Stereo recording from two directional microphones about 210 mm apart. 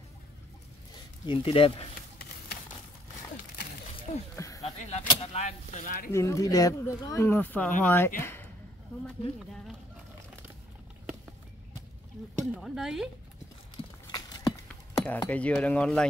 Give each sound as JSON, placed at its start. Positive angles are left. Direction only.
{"t": 1.2, "sound": "speech", "side_deg": 25}
{"t": 4.4, "sound": "a sound", "side_deg": 15}
{"t": 4.9, "sound": "speech", "side_deg": 30}
{"t": 6.1, "sound": "speech", "side_deg": 15}
{"t": 12.5, "sound": "speech", "side_deg": 0}
{"t": 14.1, "sound": "a sound", "side_deg": 20}
{"t": 14.7, "sound": "speech", "side_deg": 10}